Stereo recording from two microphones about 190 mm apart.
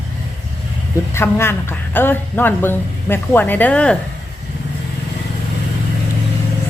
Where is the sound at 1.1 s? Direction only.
15° left (ahead or behind).